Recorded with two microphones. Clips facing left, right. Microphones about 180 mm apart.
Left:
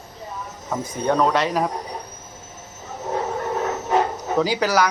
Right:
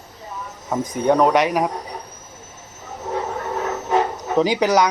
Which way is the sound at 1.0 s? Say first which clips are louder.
Right 4 dB; 15° right (ahead or behind).